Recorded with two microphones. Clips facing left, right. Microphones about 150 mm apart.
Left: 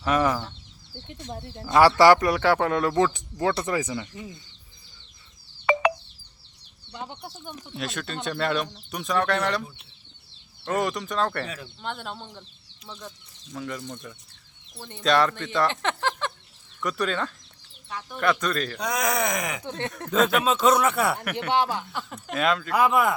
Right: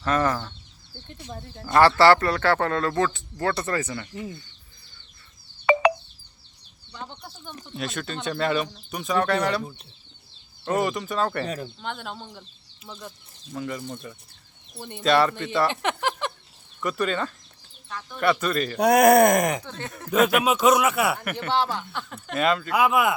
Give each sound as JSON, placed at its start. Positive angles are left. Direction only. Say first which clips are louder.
{"t": 0.0, "sound": "speech", "louder": "even", "side_deg": 10}
{"t": 2.0, "sound": "speech", "louder": "left 1 dB", "side_deg": 15}
{"t": 7.0, "sound": "speech", "louder": "left 2 dB", "side_deg": 15}
{"t": 7.5, "sound": "speech", "louder": "right 2 dB", "side_deg": 0}
{"t": 10.7, "sound": "speech", "louder": "right 2 dB", "side_deg": 0}
{"t": 11.4, "sound": "speech", "louder": "right 6 dB", "side_deg": -40}
{"t": 11.8, "sound": "speech", "louder": "even", "side_deg": 0}
{"t": 15.0, "sound": "speech", "louder": "right 1 dB", "side_deg": -5}
{"t": 16.8, "sound": "speech", "louder": "right 1 dB", "side_deg": 0}
{"t": 18.2, "sound": "speech", "louder": "right 2 dB", "side_deg": -5}
{"t": 18.8, "sound": "speech", "louder": "right 14 dB", "side_deg": -60}
{"t": 19.9, "sound": "speech", "louder": "right 2 dB", "side_deg": -10}
{"t": 21.5, "sound": "speech", "louder": "left 1 dB", "side_deg": 15}
{"t": 21.8, "sound": "speech", "louder": "even", "side_deg": 0}